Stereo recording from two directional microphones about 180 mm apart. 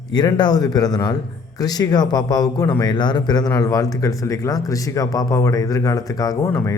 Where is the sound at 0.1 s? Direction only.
25° left (ahead or behind).